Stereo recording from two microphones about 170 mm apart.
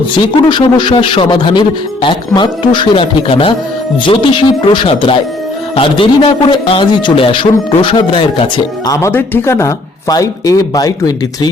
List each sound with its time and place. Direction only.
0.4 s speech: 30° left (ahead or behind)
8.9 s speech: 15° left (ahead or behind)